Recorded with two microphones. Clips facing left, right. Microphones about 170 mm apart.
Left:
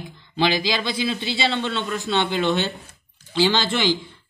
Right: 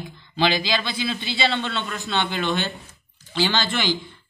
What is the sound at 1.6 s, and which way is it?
Speech, 20° left (ahead or behind).